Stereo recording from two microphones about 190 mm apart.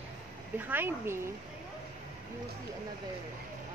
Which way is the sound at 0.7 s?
10° right (ahead or behind).